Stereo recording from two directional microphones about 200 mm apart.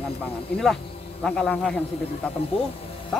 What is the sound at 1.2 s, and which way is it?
A man's voice, 5° left (ahead or behind).